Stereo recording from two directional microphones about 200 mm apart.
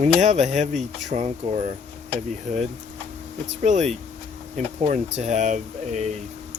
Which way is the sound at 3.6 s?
35° right (ahead or behind).